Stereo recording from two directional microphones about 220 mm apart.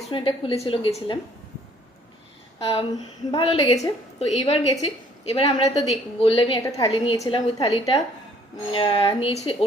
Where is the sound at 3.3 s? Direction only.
25° left (ahead or behind).